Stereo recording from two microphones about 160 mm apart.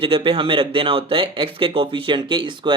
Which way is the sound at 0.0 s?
35° right (ahead or behind).